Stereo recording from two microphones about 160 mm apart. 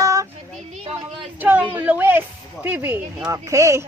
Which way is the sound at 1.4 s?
10° right (ahead or behind).